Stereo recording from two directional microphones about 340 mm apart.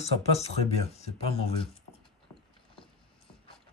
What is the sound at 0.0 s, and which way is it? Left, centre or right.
Speech, centre.